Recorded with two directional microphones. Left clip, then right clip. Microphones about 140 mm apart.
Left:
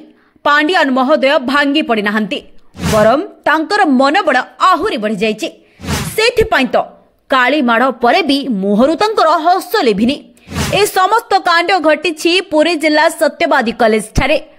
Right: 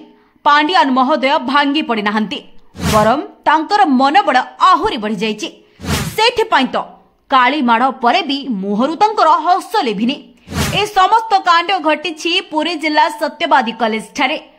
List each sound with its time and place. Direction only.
0.4 s a woman's voice: 20° left (ahead or behind)
3.4 s a woman's voice: 20° left (ahead or behind)
8.1 s a woman's voice: 35° left (ahead or behind)